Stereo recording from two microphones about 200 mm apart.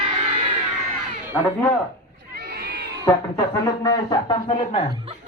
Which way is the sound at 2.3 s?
50° right (ahead or behind).